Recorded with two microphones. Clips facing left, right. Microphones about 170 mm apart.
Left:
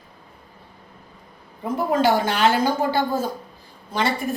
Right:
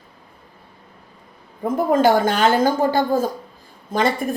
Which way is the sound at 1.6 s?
50° right (ahead or behind).